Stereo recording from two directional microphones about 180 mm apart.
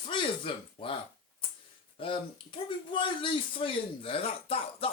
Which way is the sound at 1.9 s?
30° left (ahead or behind).